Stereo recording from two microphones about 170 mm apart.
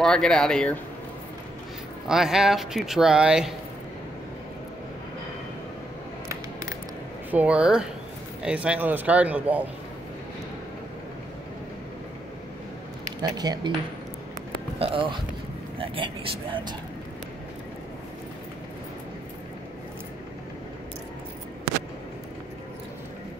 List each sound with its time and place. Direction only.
0.0 s speech: 5° left (ahead or behind)
2.0 s speech: 5° right (ahead or behind)
7.2 s speech: 10° right (ahead or behind)
13.2 s speech: 25° right (ahead or behind)
14.8 s speech: 30° right (ahead or behind)